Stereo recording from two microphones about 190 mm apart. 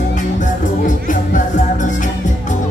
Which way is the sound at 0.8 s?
45° left (ahead or behind).